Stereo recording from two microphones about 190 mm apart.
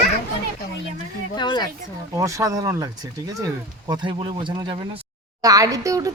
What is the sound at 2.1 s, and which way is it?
Speech, 15° right (ahead or behind).